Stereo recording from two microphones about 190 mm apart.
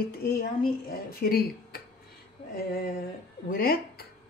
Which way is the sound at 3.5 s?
50° left (ahead or behind).